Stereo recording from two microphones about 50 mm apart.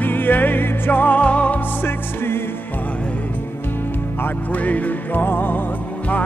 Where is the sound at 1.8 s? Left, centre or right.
Left.